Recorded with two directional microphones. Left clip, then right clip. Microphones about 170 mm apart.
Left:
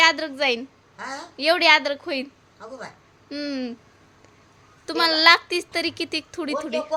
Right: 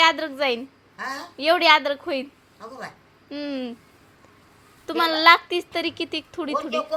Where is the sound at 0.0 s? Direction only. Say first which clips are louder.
Left 1 dB; 5° left (ahead or behind).